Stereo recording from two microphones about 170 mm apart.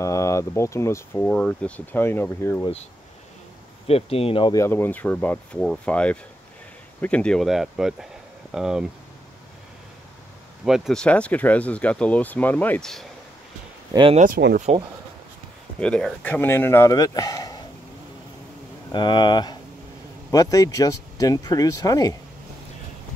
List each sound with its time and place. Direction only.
0.0 s speech: 15° left (ahead or behind)
3.8 s speech: 35° left (ahead or behind)
4.6 s speech: 10° left (ahead or behind); by 8.8 s 5° right (ahead or behind)
10.6 s speech: 5° right (ahead or behind)
14.1 s speech: 50° right (ahead or behind)
14.7 s speech: 40° right (ahead or behind)
15.8 s speech: 5° left (ahead or behind)
18.9 s speech: 25° left (ahead or behind)